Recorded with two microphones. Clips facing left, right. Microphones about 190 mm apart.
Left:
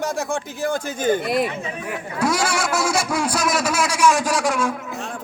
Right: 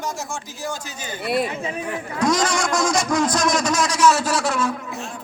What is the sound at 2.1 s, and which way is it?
A man's voice, 10° left (ahead or behind).